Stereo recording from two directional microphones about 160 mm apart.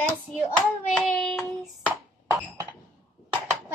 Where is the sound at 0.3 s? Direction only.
5° left (ahead or behind).